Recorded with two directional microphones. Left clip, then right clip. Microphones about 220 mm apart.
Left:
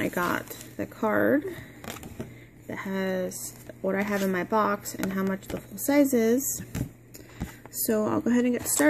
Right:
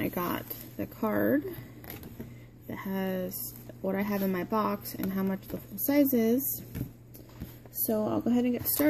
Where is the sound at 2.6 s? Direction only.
Centre (ahead or behind).